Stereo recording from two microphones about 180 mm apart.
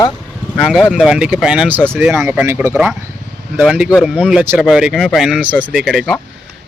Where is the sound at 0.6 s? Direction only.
Centre (ahead or behind).